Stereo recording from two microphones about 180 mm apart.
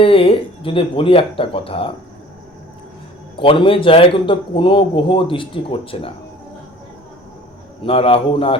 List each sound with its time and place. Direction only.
0.0 s speech: 30° left (ahead or behind)
3.3 s a man's voice: 30° left (ahead or behind)
7.8 s speech: 30° left (ahead or behind)